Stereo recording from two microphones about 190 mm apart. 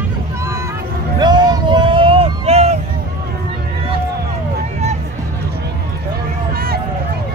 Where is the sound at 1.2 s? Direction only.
20° right (ahead or behind).